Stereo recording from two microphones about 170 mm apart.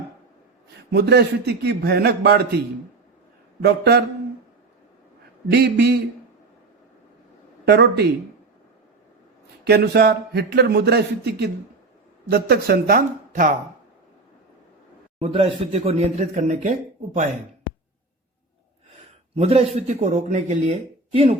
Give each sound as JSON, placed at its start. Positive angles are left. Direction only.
{"t": 0.9, "sound": "speech", "side_deg": -75}
{"t": 3.6, "sound": "speech", "side_deg": -70}
{"t": 5.5, "sound": "speech", "side_deg": -70}
{"t": 7.7, "sound": "speech", "side_deg": -75}
{"t": 9.6, "sound": "speech", "side_deg": -70}
{"t": 15.2, "sound": "speech", "side_deg": -30}
{"t": 19.4, "sound": "speech", "side_deg": -35}